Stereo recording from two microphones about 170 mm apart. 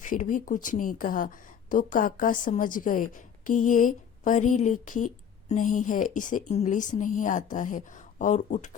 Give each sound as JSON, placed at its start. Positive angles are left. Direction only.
{"t": 0.0, "sound": "a woman's voice", "side_deg": 50}